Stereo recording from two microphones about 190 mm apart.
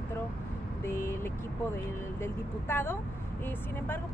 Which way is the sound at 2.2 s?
10° left (ahead or behind).